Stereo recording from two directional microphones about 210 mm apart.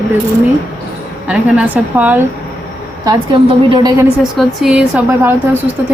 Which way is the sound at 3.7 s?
20° right (ahead or behind).